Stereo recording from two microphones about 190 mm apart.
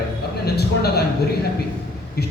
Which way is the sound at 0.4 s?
55° left (ahead or behind).